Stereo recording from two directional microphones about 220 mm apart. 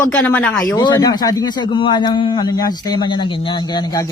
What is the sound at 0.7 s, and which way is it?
A man's voice, 20° left (ahead or behind).